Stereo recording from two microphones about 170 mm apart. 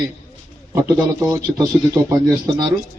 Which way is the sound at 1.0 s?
20° right (ahead or behind).